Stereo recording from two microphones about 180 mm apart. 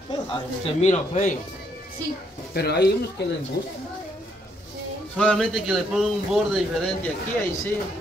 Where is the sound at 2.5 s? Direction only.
65° left (ahead or behind).